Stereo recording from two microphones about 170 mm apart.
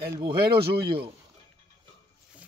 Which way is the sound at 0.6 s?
65° right (ahead or behind).